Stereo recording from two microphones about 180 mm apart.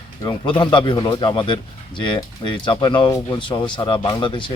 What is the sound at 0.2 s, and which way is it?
Speech, 25° left (ahead or behind).